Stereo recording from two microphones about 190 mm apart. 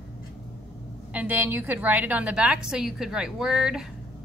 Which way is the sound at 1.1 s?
10° right (ahead or behind).